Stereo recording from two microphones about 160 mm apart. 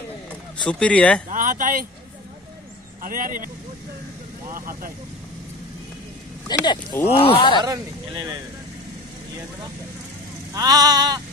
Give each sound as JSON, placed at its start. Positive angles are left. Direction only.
{"t": 0.6, "sound": "speech", "side_deg": 5}
{"t": 1.3, "sound": "speech", "side_deg": -55}
{"t": 3.0, "sound": "speech", "side_deg": -60}
{"t": 4.5, "sound": "speech", "side_deg": -60}
{"t": 6.4, "sound": "speech", "side_deg": 25}
{"t": 7.6, "sound": "speech", "side_deg": -25}
{"t": 10.5, "sound": "speech", "side_deg": -25}